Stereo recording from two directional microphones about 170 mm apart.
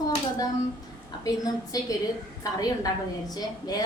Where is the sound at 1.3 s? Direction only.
20° left (ahead or behind).